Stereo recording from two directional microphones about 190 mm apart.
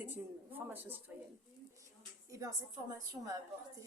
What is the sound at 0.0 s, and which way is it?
Speech, 10° right (ahead or behind).